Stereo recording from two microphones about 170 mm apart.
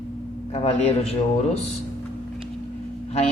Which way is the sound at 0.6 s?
35° left (ahead or behind).